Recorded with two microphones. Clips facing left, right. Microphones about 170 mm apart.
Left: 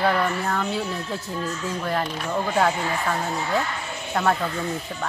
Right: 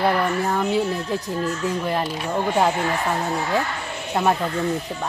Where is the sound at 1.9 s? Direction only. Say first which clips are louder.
Right 2 dB; 15° right (ahead or behind).